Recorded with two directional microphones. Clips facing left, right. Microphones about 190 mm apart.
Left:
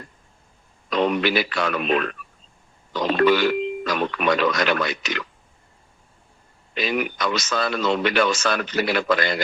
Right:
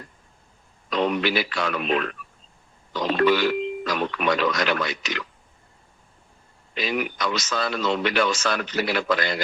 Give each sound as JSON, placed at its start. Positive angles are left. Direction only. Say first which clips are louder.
{"t": 0.9, "sound": "speech", "louder": "left 2 dB", "side_deg": 60}
{"t": 6.7, "sound": "speech", "louder": "left 2 dB", "side_deg": 55}